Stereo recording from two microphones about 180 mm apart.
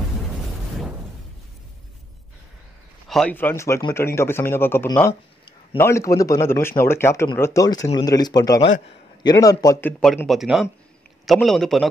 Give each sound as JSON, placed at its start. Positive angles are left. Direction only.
{"t": 3.1, "sound": "a man's voice", "side_deg": 5}